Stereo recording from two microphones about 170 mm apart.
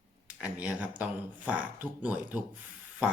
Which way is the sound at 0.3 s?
5° right (ahead or behind).